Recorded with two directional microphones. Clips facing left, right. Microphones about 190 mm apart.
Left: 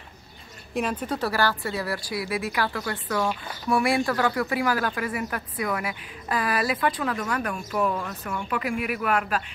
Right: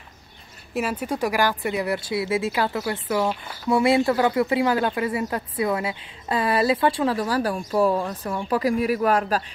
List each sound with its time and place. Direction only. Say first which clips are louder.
0.7 s speech: right 2 dB; 5° right (ahead or behind); by 9.4 s 35° right (ahead or behind)